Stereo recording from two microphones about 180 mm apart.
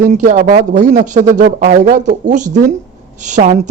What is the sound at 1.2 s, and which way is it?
Speech, 65° right (ahead or behind).